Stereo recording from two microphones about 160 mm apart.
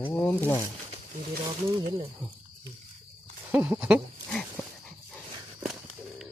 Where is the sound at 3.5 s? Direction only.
10° right (ahead or behind).